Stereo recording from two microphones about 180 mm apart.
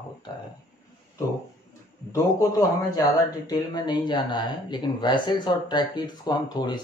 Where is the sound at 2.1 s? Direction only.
20° left (ahead or behind).